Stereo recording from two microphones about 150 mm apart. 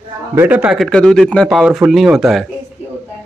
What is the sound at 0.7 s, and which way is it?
Speech, 5° left (ahead or behind).